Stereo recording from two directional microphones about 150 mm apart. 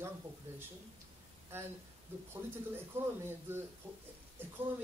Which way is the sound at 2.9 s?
15° right (ahead or behind).